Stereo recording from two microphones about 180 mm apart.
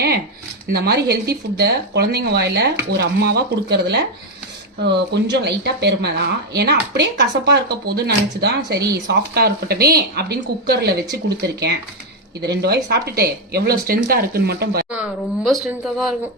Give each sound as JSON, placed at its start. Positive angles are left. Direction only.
{"t": 0.7, "sound": "speech", "side_deg": -60}
{"t": 15.4, "sound": "speech", "side_deg": 0}